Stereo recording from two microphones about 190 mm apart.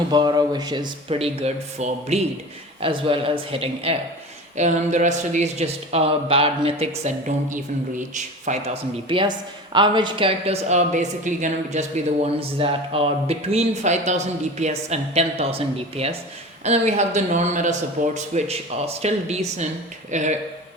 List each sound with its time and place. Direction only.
0.1 s speech: 20° right (ahead or behind); by 8.7 s 40° right (ahead or behind)
9.0 s speech: 25° right (ahead or behind)